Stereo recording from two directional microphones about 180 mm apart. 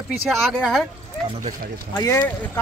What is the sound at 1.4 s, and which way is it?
Speech, 45° right (ahead or behind).